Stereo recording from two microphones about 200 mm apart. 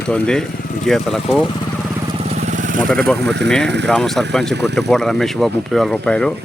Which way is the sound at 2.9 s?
5° left (ahead or behind).